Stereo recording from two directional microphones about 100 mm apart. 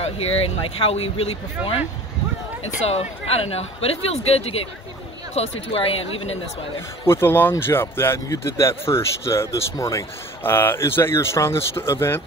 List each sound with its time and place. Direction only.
0.7 s speech: 80° left
2.9 s speech: 85° left
5.3 s speech: 70° left (ahead or behind)
7.1 s speech: 25° left (ahead or behind)